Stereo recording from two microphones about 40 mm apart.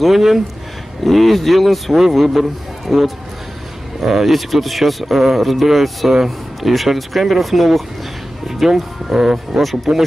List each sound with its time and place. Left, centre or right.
0.0 s a man's voice: centre